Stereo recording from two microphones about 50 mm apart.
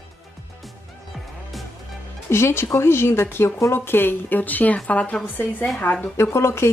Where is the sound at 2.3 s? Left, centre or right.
Left.